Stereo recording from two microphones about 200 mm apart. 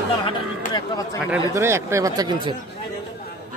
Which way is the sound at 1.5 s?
15° right (ahead or behind).